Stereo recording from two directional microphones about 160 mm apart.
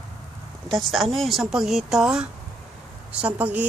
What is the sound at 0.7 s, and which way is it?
Speech, centre (ahead or behind).